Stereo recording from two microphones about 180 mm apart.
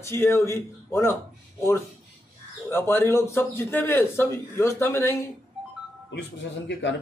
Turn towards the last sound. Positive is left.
turn(degrees=80)